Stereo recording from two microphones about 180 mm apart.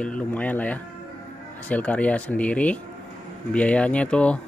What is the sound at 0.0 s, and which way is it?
Speech, 5° left (ahead or behind).